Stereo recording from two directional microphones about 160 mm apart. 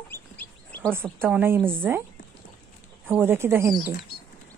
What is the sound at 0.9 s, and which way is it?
A woman's voice, 15° right (ahead or behind).